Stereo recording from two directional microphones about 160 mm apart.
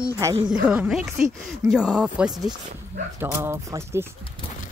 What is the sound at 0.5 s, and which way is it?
Speech, 10° right (ahead or behind).